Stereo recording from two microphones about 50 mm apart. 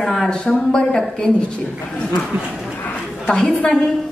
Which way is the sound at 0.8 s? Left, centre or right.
Centre.